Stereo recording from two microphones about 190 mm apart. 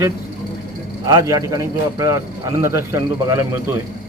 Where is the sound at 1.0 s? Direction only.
15° right (ahead or behind).